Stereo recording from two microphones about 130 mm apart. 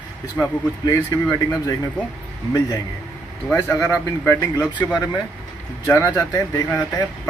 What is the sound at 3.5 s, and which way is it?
A man's voice, 20° left (ahead or behind).